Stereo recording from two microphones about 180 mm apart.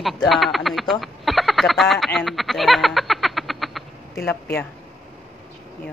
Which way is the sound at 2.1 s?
Centre (ahead or behind).